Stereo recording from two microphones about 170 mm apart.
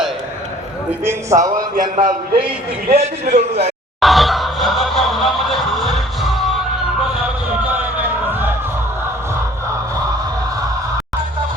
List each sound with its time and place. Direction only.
0.9 s a man's voice: 15° right (ahead or behind)
1.5 s a man's voice: 55° right (ahead or behind)
2.9 s a man's voice: 40° right (ahead or behind)
4.0 s music: centre (ahead or behind)
8.3 s music: 10° right (ahead or behind)